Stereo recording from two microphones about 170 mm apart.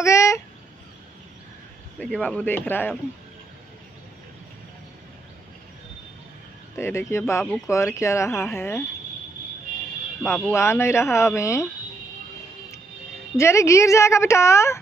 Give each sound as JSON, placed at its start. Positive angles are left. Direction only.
{"t": 0.0, "sound": "fowl", "side_deg": 15}
{"t": 2.0, "sound": "speech", "side_deg": 5}
{"t": 6.8, "sound": "speech", "side_deg": 15}
{"t": 10.5, "sound": "speech", "side_deg": 15}
{"t": 13.4, "sound": "speech", "side_deg": 15}